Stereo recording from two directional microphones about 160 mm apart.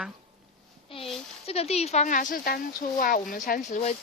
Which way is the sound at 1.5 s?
40° left (ahead or behind).